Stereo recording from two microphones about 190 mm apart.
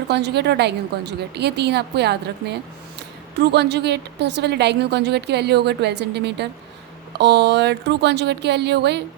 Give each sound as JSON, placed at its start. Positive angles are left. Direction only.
{"t": 0.1, "sound": "a woman's voice", "side_deg": -60}